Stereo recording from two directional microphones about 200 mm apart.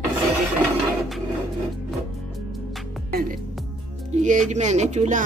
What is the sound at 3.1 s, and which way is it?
Music, 45° right (ahead or behind).